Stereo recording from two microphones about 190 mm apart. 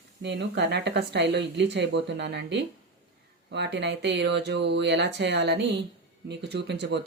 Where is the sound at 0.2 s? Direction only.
65° right (ahead or behind).